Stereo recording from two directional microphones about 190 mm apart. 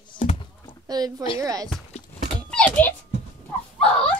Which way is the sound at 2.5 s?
10° left (ahead or behind).